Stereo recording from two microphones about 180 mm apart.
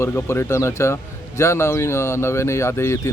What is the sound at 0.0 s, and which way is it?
Speech, 15° left (ahead or behind).